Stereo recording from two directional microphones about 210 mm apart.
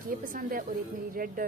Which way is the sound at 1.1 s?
40° right (ahead or behind).